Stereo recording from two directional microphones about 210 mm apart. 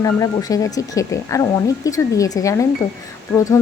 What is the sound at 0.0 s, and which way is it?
Speech, 15° left (ahead or behind).